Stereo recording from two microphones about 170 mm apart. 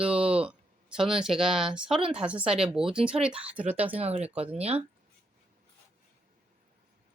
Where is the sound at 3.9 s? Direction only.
35° right (ahead or behind).